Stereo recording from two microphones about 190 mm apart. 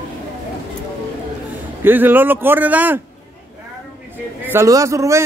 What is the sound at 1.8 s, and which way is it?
A man's voice, 10° right (ahead or behind).